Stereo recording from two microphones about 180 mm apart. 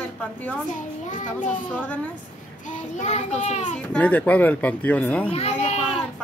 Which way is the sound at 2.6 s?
45° left (ahead or behind).